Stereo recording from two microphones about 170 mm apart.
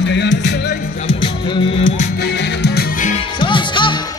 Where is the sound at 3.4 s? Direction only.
30° left (ahead or behind).